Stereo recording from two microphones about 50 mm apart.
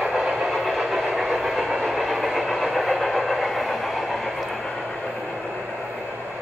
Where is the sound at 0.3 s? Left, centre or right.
Centre.